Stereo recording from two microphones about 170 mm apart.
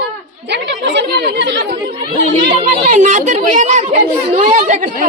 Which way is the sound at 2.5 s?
45° right (ahead or behind).